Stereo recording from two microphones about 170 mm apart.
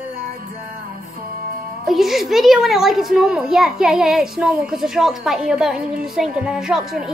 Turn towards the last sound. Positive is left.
turn(degrees=-5)  # may be behind; listen again after turning